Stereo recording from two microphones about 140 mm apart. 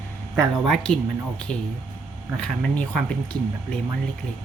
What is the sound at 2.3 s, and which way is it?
Speech, 5° left (ahead or behind).